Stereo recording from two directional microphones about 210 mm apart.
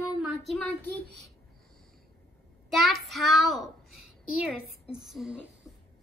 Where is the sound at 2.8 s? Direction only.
Centre (ahead or behind).